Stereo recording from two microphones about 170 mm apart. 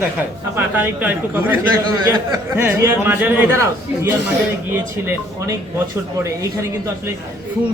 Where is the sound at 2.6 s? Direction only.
15° right (ahead or behind).